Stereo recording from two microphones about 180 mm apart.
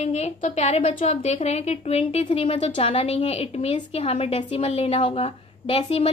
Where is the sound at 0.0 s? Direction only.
40° left (ahead or behind).